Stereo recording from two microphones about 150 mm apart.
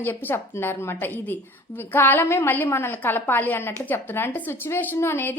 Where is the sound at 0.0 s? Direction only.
15° left (ahead or behind).